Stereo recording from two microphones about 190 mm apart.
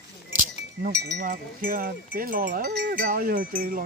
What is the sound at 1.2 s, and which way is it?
Cowbell, 45° right (ahead or behind).